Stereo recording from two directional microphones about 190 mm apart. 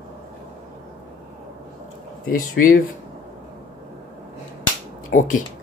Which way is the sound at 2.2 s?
50° left (ahead or behind).